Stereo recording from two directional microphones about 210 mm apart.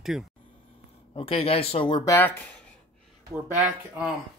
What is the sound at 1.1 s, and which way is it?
Speech, 25° left (ahead or behind).